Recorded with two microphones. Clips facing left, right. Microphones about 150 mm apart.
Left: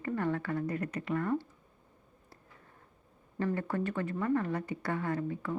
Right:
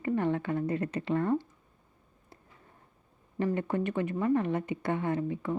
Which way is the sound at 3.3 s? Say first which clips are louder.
Right 3 dB; 20° right (ahead or behind).